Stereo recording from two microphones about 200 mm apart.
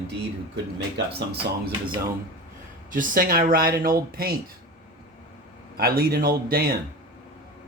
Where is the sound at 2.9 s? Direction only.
45° right (ahead or behind).